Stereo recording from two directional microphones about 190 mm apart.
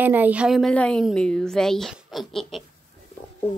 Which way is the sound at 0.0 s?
10° right (ahead or behind).